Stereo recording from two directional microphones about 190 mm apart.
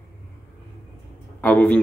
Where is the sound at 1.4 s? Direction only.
10° left (ahead or behind).